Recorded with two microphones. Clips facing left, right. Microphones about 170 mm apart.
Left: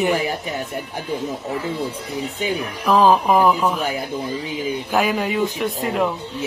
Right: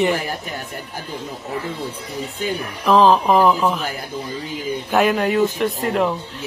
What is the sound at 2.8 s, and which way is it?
Speech, 5° left (ahead or behind).